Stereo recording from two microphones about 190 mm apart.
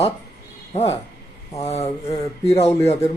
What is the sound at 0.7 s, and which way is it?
Speech, 35° left (ahead or behind).